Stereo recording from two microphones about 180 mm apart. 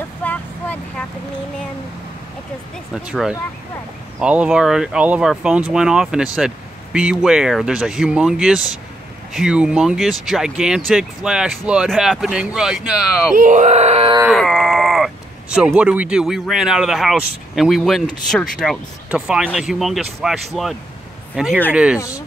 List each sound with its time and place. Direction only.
0.2 s vehicle: 10° left (ahead or behind)
2.9 s speech: 5° right (ahead or behind)
13.4 s speech: 45° right (ahead or behind)
14.3 s groan: centre (ahead or behind)
15.5 s speech: 5° right (ahead or behind)